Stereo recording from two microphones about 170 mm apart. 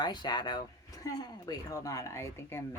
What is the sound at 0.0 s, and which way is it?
Speech, 25° left (ahead or behind).